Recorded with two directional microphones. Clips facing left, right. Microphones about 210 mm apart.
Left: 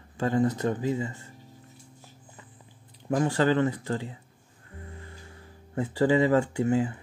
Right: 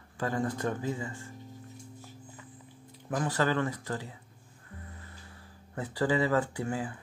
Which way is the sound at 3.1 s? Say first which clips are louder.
Left 6 dB; 25° left (ahead or behind).